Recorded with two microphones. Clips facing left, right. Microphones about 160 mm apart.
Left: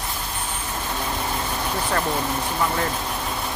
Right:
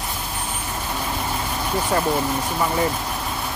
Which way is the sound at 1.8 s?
10° right (ahead or behind).